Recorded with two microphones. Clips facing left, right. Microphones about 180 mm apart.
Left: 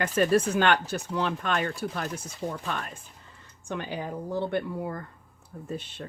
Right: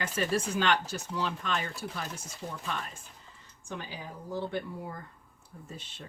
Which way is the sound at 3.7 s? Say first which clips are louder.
Left 8 dB; 60° left (ahead or behind).